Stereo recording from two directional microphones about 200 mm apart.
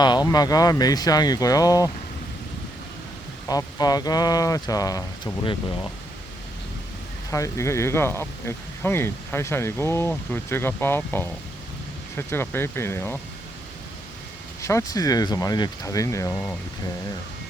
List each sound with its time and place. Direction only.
0.0 s speech: 20° left (ahead or behind)
3.5 s speech: 20° left (ahead or behind)
7.3 s speech: 15° left (ahead or behind)
14.6 s speech: 15° left (ahead or behind)